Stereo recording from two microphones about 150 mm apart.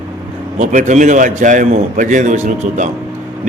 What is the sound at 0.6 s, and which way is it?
A man's voice, 55° right (ahead or behind).